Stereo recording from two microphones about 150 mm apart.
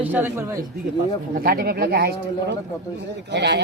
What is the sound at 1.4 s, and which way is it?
Speech, 85° right.